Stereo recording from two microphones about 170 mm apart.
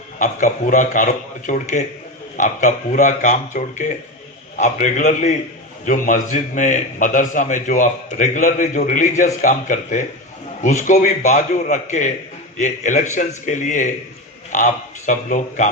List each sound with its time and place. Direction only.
0.2 s a man's voice: 50° left (ahead or behind)